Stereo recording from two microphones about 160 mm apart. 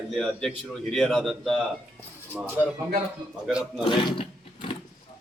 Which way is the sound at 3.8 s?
30° left (ahead or behind).